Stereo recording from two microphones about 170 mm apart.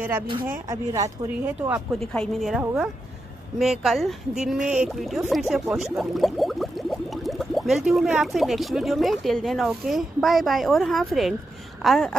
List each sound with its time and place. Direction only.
0.5 s speech: 20° right (ahead or behind)
1.7 s speech: centre (ahead or behind)